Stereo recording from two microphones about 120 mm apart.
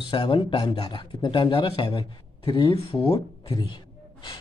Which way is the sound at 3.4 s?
40° left (ahead or behind).